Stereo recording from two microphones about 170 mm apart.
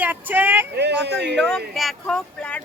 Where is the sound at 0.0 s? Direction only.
10° right (ahead or behind).